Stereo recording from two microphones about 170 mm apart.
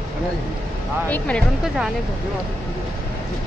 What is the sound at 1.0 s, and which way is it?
Speech, 10° left (ahead or behind).